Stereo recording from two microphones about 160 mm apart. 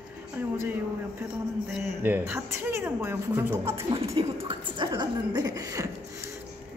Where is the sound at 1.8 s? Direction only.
15° right (ahead or behind).